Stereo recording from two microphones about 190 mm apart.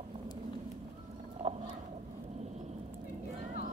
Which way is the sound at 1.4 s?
35° right (ahead or behind).